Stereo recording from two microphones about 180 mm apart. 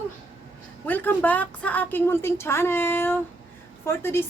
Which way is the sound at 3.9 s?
15° left (ahead or behind).